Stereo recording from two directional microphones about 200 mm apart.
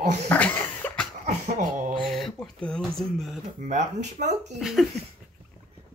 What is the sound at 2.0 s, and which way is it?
Speech, centre (ahead or behind).